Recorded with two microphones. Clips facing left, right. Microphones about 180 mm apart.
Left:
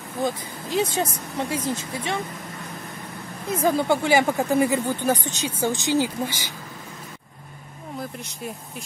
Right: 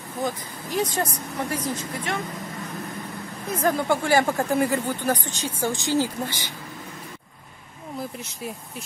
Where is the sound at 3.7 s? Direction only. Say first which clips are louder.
Left 1 dB; 20° left (ahead or behind).